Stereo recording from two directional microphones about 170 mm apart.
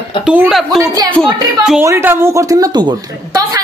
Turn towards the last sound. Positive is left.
turn(degrees=-25)  # may be behind; listen again after turning